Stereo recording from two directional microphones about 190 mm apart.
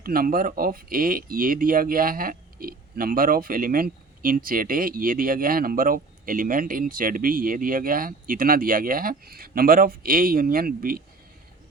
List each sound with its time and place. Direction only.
0.0 s speech: 50° right (ahead or behind)